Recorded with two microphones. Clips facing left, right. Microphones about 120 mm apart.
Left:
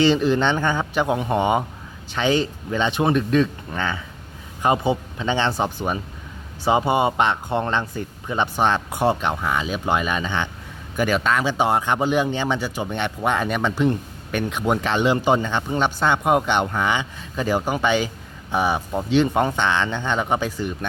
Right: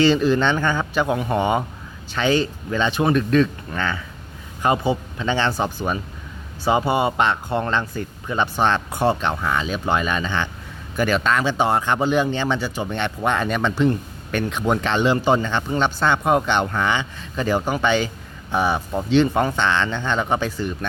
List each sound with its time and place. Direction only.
0.0 s speech: 20° left (ahead or behind)